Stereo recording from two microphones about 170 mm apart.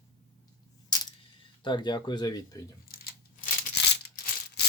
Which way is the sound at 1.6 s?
25° left (ahead or behind).